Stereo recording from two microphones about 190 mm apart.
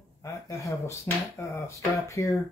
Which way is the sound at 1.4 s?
15° left (ahead or behind).